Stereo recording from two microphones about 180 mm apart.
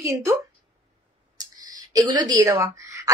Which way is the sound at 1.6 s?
20° right (ahead or behind).